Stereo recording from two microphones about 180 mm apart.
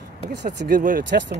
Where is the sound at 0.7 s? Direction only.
50° right (ahead or behind).